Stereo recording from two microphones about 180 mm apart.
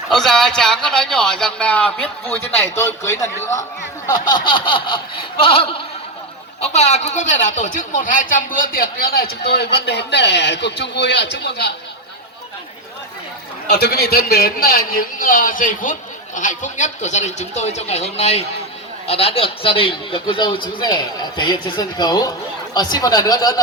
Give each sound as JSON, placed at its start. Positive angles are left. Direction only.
{"t": 0.1, "sound": "a man's voice", "side_deg": 0}
{"t": 5.4, "sound": "a sound", "side_deg": 30}
{"t": 6.6, "sound": "speech", "side_deg": 35}
{"t": 13.7, "sound": "a man's voice", "side_deg": 65}